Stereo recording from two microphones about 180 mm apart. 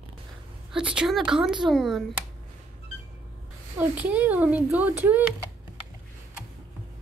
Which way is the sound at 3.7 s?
10° right (ahead or behind).